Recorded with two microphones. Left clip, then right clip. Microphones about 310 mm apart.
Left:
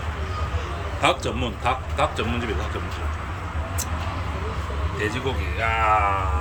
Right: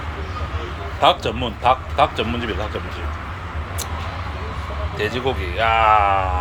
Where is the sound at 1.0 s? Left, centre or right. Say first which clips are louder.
Right 6 dB; centre.